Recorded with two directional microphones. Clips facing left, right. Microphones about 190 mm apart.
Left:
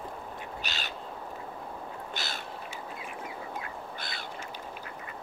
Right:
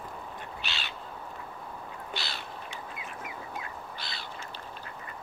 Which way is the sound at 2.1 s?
45° left (ahead or behind).